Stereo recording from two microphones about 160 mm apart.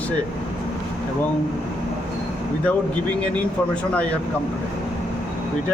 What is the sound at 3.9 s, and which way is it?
Speech, 10° left (ahead or behind).